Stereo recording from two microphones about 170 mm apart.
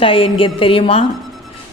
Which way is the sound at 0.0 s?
30° left (ahead or behind).